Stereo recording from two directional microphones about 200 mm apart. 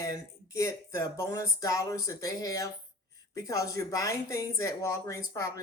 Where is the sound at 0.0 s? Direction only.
15° left (ahead or behind).